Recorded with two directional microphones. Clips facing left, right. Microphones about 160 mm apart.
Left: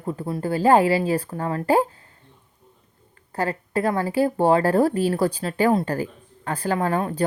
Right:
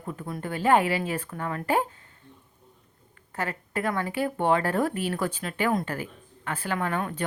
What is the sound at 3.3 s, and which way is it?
Speech, 35° left (ahead or behind).